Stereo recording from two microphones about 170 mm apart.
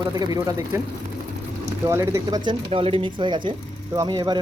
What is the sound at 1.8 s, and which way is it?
Speech, 15° right (ahead or behind).